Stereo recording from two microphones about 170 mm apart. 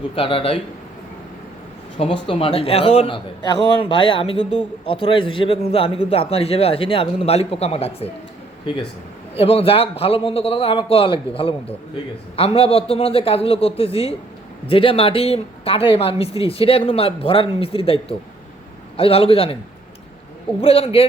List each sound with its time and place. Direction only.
0.2 s a woman's voice: 30° left (ahead or behind)
2.2 s a woman's voice: 35° left (ahead or behind)
9.3 s a woman's voice: 35° left (ahead or behind)
20.6 s a woman's voice: 35° left (ahead or behind)